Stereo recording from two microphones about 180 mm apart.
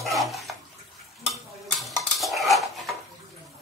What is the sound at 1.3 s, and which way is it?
Cutlery, centre (ahead or behind).